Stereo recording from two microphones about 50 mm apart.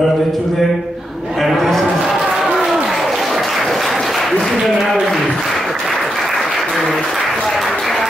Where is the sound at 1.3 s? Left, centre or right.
Centre.